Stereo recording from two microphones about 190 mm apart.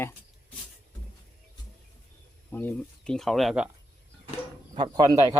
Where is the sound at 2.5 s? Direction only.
10° left (ahead or behind).